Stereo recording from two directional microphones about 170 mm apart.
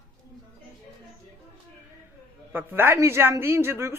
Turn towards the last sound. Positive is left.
turn(degrees=-15)  # may be behind; listen again after turning